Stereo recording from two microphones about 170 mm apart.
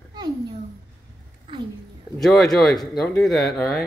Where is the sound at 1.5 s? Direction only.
30° right (ahead or behind).